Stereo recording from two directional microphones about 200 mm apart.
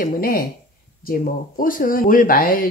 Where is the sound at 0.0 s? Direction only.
45° left (ahead or behind).